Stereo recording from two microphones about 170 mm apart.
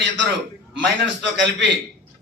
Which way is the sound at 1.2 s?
90° right.